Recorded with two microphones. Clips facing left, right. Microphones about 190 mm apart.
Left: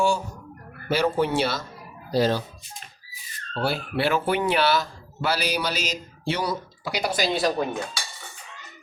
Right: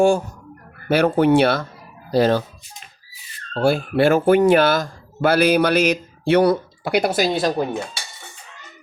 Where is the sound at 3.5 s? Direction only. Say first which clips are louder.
Right 8 dB; 50° right (ahead or behind).